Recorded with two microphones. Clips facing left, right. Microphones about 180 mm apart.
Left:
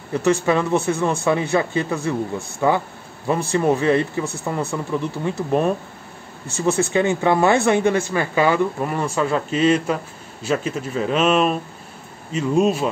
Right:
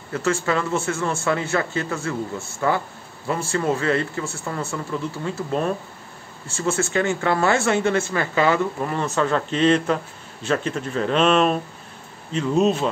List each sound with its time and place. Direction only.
0.1 s speech: 15° left (ahead or behind)